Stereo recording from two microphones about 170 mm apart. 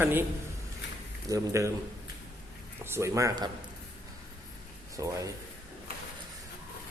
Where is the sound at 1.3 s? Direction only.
20° right (ahead or behind).